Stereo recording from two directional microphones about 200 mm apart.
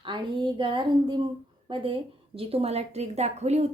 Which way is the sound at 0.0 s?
25° right (ahead or behind).